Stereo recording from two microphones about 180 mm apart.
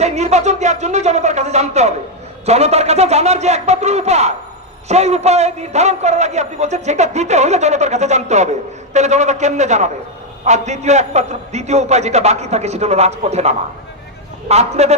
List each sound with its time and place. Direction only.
0.0 s a man's voice: 40° right (ahead or behind)